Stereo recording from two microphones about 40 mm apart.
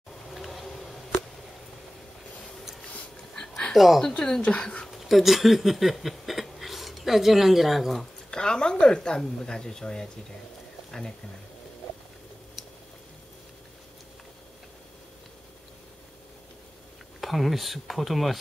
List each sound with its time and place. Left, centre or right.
0.3 s a sound: centre
3.3 s a sound: centre
3.7 s speech: centre
4.4 s speech: left
4.9 s speech: centre
8.0 s speech: centre
12.6 s chewing: centre
17.2 s speech: centre